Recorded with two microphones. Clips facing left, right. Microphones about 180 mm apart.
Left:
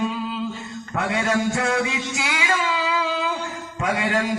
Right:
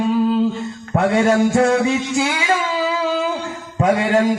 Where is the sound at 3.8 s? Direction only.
30° right (ahead or behind).